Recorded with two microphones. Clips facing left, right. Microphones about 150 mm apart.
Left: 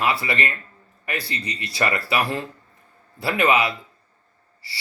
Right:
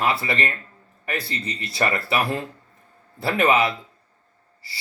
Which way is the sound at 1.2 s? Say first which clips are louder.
Right 1 dB; 25° right (ahead or behind).